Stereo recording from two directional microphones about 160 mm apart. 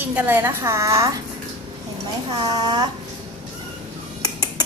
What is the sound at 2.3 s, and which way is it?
Speech, 25° right (ahead or behind).